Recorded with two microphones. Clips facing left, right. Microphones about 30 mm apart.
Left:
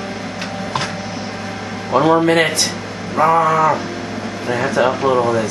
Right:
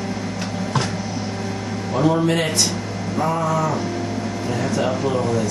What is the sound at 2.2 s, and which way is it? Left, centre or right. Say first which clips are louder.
A man's voice: left 5 dB; left.